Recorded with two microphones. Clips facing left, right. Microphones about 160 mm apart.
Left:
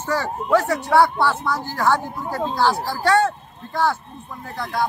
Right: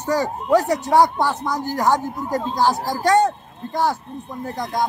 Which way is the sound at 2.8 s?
40° right (ahead or behind).